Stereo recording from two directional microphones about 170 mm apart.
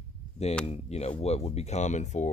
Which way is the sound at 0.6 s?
40° left (ahead or behind).